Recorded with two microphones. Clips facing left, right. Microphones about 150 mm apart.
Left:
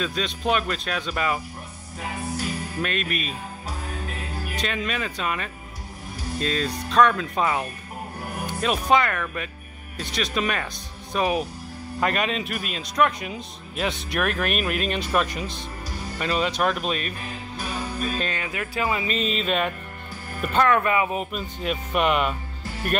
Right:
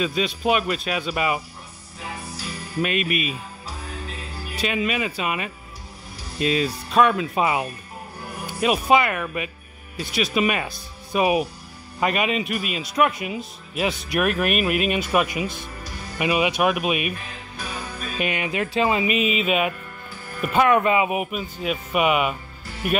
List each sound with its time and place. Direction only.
0.0 s speech: 5° right (ahead or behind)
2.8 s speech: 5° right (ahead or behind)
4.6 s a man's voice: 5° right (ahead or behind)
18.1 s speech: 15° right (ahead or behind)
19.0 s speech: 10° right (ahead or behind)